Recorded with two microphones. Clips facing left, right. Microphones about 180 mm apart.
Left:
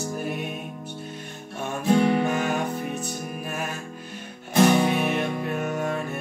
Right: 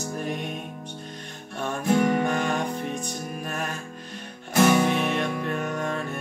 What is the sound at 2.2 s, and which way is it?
Music, 5° left (ahead or behind).